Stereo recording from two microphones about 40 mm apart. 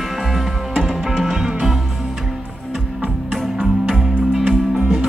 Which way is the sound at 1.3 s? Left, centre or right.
Centre.